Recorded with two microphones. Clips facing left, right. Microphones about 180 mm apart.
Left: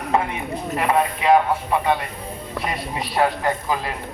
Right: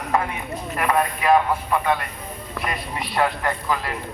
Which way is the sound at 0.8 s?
20° left (ahead or behind).